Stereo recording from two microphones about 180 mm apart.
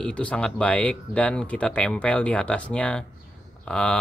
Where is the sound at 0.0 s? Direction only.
5° left (ahead or behind).